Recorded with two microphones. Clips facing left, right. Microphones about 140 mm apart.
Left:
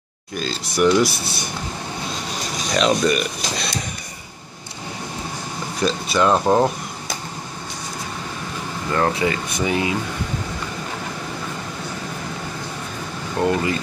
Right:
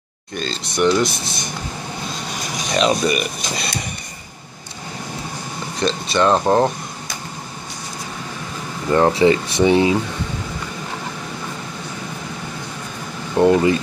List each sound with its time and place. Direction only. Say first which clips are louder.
0.3 s speech: even; 5° left (ahead or behind)
2.7 s speech: even; 5° right (ahead or behind)
5.8 s speech: right 1 dB; 5° left (ahead or behind)
8.9 s speech: right 7 dB; 25° right (ahead or behind)
13.4 s speech: right 6 dB; 20° right (ahead or behind)